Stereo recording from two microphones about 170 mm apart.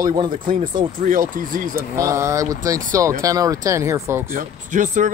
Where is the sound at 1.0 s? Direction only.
50° right (ahead or behind).